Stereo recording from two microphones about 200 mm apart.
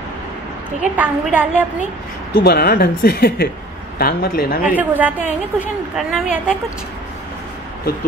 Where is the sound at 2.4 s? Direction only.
50° left (ahead or behind).